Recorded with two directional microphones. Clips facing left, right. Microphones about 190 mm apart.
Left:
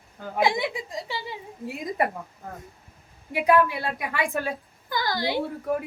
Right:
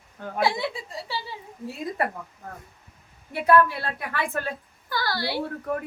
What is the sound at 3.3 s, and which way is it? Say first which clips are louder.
A woman's voice: right 1 dB; 15° left (ahead or behind).